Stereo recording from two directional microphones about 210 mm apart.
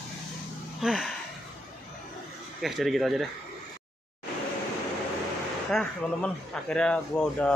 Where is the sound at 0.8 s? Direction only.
Centre (ahead or behind).